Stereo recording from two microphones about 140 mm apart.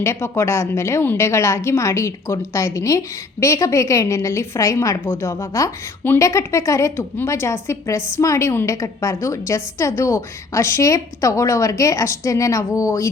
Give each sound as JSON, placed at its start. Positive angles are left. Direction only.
{"t": 0.0, "sound": "a woman's voice", "side_deg": 20}